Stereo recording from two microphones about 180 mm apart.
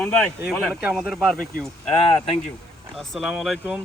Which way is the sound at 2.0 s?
35° left (ahead or behind).